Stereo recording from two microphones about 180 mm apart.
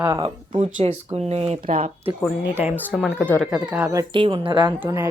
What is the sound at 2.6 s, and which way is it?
Speech, 10° right (ahead or behind).